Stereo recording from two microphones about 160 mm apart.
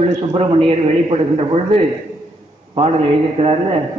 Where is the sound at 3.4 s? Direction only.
35° right (ahead or behind).